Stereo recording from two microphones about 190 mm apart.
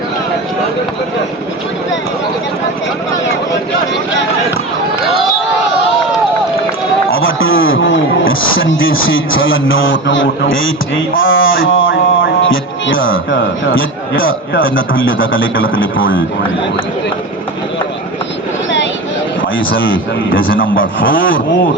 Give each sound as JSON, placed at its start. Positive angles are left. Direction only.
{"t": 7.1, "sound": "a man's voice", "side_deg": 90}
{"t": 19.5, "sound": "speech", "side_deg": 90}
{"t": 20.6, "sound": "a man's voice", "side_deg": 50}
{"t": 21.1, "sound": "speech", "side_deg": 90}